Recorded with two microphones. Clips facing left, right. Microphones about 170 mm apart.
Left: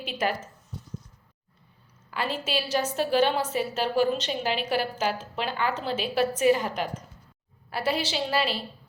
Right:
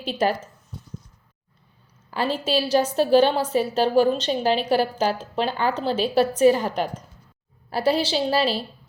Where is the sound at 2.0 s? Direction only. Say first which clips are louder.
Right 6 dB; 35° right (ahead or behind).